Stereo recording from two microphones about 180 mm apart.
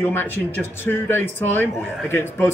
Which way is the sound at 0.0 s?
10° left (ahead or behind).